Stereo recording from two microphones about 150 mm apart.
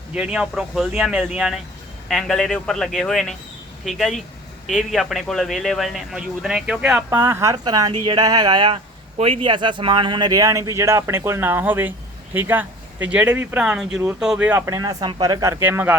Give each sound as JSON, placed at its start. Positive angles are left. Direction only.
{"t": 0.1, "sound": "a man's voice", "side_deg": -5}
{"t": 7.1, "sound": "speech", "side_deg": -15}